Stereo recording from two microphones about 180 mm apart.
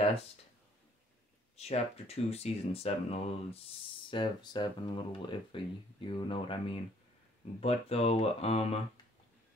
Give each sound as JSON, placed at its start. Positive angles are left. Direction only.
{"t": 1.6, "sound": "speech", "side_deg": 35}